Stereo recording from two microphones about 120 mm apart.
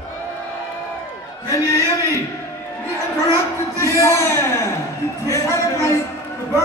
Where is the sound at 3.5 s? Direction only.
25° left (ahead or behind).